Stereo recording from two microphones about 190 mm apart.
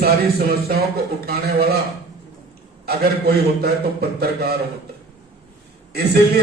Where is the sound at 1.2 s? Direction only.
55° right (ahead or behind).